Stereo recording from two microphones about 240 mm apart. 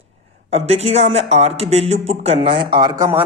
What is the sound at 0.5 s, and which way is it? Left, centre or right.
Speech, right.